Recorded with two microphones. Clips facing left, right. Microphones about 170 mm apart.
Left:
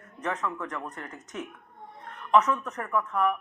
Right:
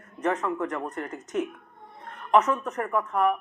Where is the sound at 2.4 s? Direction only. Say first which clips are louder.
Right 3 dB; 20° right (ahead or behind).